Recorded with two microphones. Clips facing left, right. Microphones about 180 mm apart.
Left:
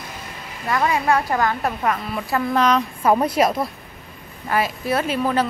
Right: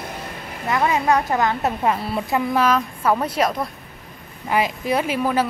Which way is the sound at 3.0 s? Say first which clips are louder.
Left 4 dB; 15° left (ahead or behind).